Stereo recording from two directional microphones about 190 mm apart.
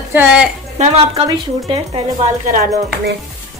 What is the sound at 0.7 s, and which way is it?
A woman's voice, 35° right (ahead or behind).